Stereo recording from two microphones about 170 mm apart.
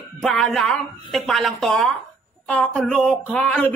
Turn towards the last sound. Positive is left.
turn(degrees=5)  # may be behind; listen again after turning